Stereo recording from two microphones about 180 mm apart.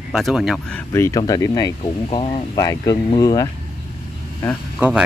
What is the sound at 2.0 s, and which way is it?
Speech, 35° left (ahead or behind).